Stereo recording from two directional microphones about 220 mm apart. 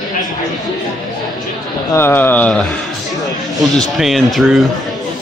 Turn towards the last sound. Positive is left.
turn(degrees=0)  # may be behind; listen again after turning